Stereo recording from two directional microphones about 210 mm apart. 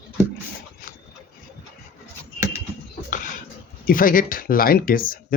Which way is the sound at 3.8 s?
40° left (ahead or behind).